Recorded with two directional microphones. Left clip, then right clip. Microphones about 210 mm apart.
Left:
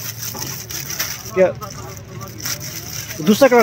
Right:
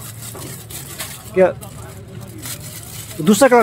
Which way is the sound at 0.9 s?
10° right (ahead or behind).